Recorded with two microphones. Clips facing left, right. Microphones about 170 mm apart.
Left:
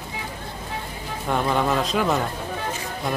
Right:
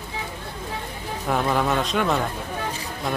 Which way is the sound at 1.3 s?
Centre (ahead or behind).